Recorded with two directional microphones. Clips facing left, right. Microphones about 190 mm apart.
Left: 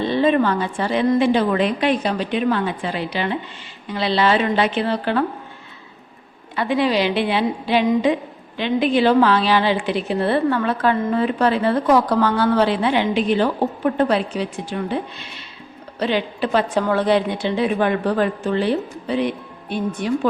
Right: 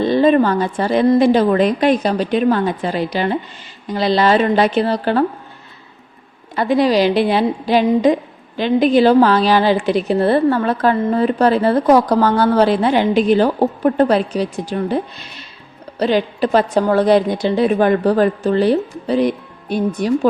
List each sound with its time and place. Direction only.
0.0 s a woman's voice: 40° right (ahead or behind)
6.6 s a woman's voice: 40° right (ahead or behind)